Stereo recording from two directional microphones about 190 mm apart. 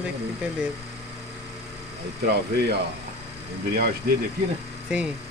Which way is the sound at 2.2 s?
60° right (ahead or behind).